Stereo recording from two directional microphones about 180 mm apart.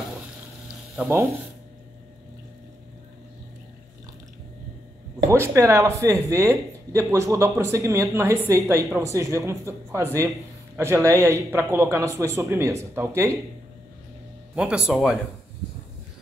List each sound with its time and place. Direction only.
0.9 s speech: 10° right (ahead or behind)
5.3 s speech: 15° right (ahead or behind)
14.5 s speech: 5° right (ahead or behind)